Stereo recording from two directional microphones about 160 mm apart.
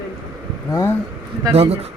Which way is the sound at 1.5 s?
40° right (ahead or behind).